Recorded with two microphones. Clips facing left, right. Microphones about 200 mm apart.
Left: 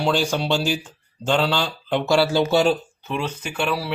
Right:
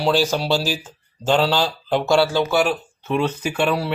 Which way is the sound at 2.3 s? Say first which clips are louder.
Left 1 dB; 25° left (ahead or behind).